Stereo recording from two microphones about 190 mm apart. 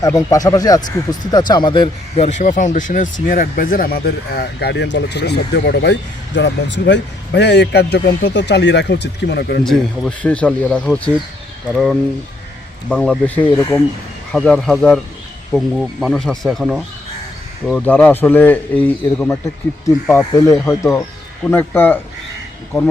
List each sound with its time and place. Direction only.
0.2 s speech: 15° left (ahead or behind); by 9.6 s 60° left (ahead or behind)
9.6 s a man's voice: 5° left (ahead or behind)